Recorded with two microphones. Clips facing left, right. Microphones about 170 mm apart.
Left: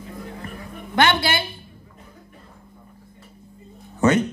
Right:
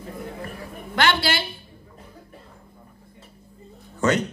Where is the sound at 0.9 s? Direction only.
20° left (ahead or behind).